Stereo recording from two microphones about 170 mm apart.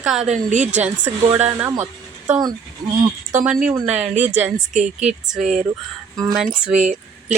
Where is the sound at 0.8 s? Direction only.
10° right (ahead or behind).